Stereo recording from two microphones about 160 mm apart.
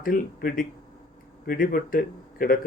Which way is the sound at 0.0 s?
60° left (ahead or behind).